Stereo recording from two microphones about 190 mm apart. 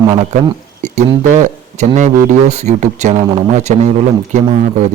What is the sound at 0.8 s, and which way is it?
Speech, 40° right (ahead or behind).